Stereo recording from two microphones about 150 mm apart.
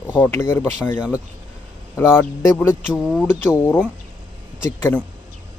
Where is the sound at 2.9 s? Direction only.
Centre (ahead or behind).